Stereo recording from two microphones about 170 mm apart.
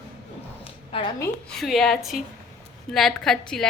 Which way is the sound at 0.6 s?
35° left (ahead or behind).